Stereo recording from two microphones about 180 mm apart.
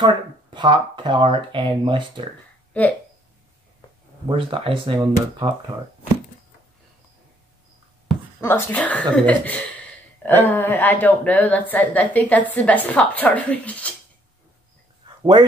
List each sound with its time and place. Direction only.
0.0 s speech: 25° right (ahead or behind)
4.3 s speech: 30° right (ahead or behind)
8.4 s speech: 15° left (ahead or behind)